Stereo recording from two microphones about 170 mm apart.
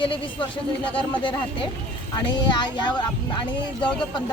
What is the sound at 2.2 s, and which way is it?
Speech, 25° left (ahead or behind).